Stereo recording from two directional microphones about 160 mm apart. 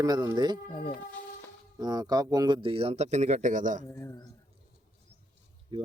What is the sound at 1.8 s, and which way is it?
Speech, 25° right (ahead or behind).